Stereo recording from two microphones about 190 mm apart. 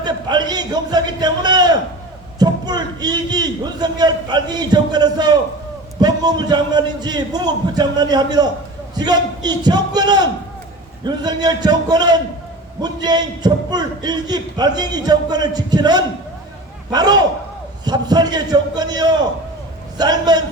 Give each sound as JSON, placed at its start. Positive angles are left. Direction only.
{"t": 0.0, "sound": "a man's voice", "side_deg": -20}